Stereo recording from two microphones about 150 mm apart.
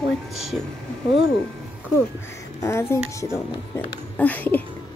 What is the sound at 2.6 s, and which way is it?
Speech, 15° left (ahead or behind).